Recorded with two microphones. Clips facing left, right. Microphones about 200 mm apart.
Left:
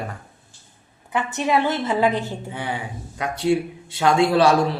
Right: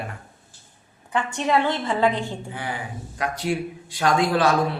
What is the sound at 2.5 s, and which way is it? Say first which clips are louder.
A man's voice: left 2 dB; 25° left (ahead or behind).